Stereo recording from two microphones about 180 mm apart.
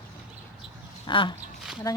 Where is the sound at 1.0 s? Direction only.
25° left (ahead or behind).